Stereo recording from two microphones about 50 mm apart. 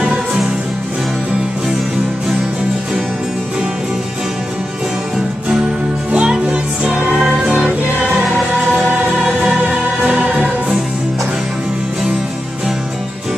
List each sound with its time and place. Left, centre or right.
0.0 s music: centre
6.1 s music: centre
9.2 s music: centre